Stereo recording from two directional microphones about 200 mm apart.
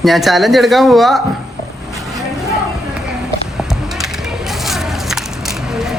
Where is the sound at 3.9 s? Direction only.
Centre (ahead or behind).